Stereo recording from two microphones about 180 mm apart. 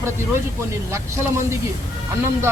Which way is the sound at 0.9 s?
15° right (ahead or behind).